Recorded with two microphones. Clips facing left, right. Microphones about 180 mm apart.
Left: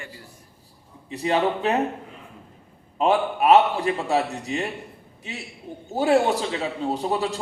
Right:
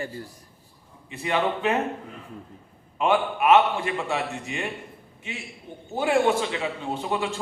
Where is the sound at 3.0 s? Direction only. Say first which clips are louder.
Left 2 dB; 35° left (ahead or behind).